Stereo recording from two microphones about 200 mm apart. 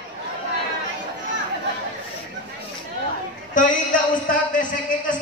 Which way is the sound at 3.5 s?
40° left (ahead or behind).